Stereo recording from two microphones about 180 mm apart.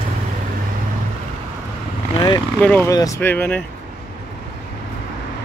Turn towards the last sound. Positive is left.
turn(degrees=10)  # may be behind; listen again after turning